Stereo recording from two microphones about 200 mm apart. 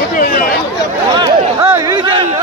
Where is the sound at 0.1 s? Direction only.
45° left (ahead or behind).